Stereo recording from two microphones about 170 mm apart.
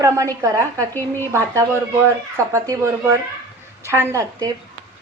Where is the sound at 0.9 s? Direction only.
15° left (ahead or behind).